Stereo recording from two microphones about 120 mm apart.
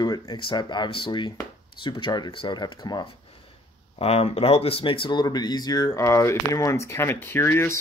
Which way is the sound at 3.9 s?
55° left (ahead or behind).